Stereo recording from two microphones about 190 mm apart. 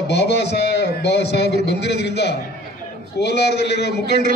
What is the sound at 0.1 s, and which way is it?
A man's voice, 60° left (ahead or behind).